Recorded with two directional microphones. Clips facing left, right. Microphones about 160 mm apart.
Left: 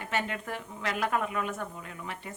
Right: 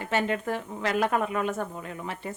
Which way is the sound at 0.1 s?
35° right (ahead or behind).